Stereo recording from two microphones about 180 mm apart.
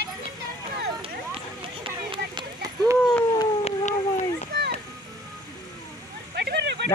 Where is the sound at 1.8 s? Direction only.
25° right (ahead or behind).